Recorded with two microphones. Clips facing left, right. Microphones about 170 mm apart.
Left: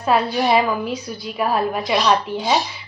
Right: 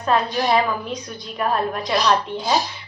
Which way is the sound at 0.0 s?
5° left (ahead or behind).